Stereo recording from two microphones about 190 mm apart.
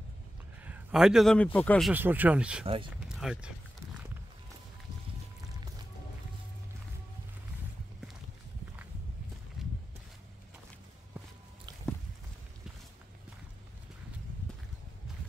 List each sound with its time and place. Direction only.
0.7 s a man's voice: 5° right (ahead or behind)
2.0 s speech: 10° right (ahead or behind)
2.6 s speech: 30° right (ahead or behind)
3.1 s speech: 5° right (ahead or behind)